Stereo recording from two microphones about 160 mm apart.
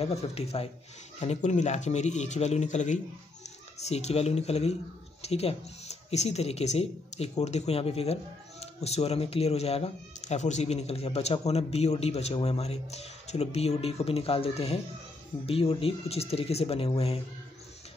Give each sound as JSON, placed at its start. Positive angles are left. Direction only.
{"t": 0.0, "sound": "speech", "side_deg": 40}